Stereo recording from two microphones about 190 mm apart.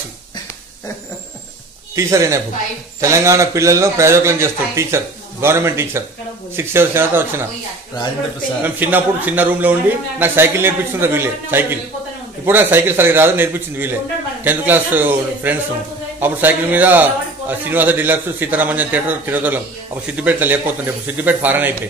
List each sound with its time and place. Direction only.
2.0 s a man's voice: 15° right (ahead or behind)
8.6 s a man's voice: 10° right (ahead or behind)